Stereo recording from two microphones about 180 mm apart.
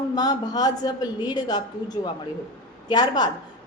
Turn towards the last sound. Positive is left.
turn(degrees=25)  # may be behind; listen again after turning